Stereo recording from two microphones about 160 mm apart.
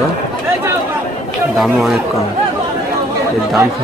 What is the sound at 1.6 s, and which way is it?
Speech, centre (ahead or behind).